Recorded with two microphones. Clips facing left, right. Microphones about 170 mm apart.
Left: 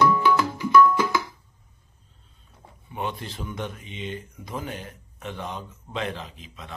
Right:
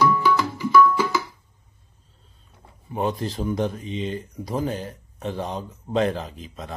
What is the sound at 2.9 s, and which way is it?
Speech, 40° right (ahead or behind).